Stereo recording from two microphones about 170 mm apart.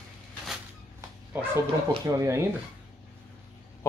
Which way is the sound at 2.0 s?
15° right (ahead or behind).